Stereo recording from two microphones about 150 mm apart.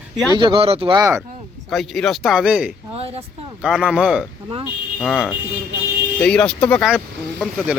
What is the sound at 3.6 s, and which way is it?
Speech, 5° right (ahead or behind).